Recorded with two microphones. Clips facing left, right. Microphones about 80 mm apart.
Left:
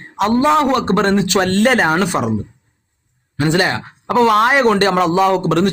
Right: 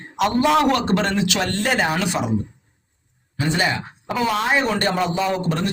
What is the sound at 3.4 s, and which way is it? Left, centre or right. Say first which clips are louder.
Speech: left 6 dB; left.